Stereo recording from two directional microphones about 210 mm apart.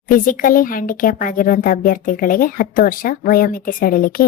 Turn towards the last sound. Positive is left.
turn(degrees=40)  # may be behind; listen again after turning